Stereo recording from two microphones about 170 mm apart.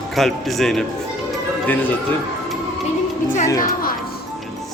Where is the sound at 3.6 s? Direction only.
60° left (ahead or behind).